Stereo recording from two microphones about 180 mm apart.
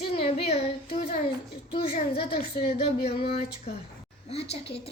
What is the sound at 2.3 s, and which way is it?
Speech, 60° left (ahead or behind).